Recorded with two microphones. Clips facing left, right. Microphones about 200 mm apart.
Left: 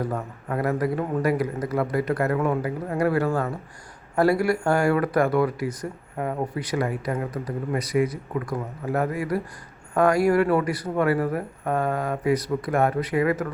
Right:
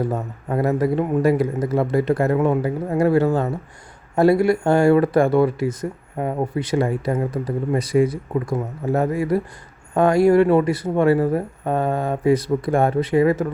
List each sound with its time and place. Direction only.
0.1 s speech: 25° right (ahead or behind)